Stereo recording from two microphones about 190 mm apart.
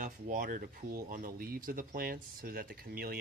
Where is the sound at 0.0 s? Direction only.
45° right (ahead or behind).